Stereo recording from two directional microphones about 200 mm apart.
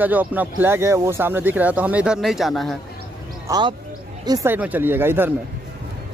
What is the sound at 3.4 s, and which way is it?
Speech, 20° right (ahead or behind).